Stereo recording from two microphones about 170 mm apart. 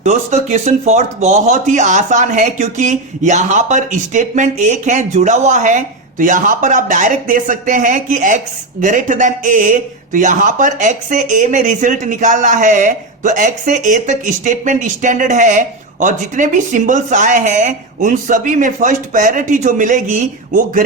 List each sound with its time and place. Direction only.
0.0 s a man's voice: 40° right (ahead or behind)